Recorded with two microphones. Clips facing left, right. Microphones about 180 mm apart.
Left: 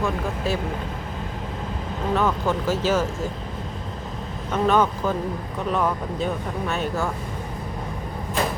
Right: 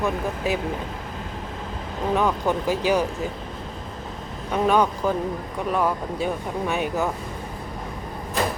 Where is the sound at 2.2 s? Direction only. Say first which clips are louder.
Even; 15° right (ahead or behind).